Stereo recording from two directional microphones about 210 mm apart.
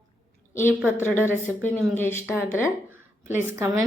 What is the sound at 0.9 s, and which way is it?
A woman's voice, 10° left (ahead or behind).